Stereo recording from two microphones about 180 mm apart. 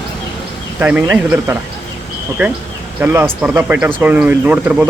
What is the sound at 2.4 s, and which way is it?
A man's voice, 10° right (ahead or behind).